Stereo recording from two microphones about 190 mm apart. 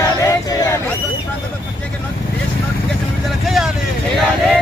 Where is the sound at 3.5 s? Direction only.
Centre (ahead or behind).